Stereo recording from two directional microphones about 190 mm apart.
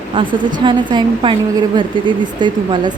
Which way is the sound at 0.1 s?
25° right (ahead or behind).